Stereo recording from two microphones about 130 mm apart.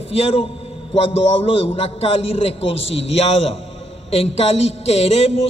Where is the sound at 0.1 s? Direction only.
45° left (ahead or behind).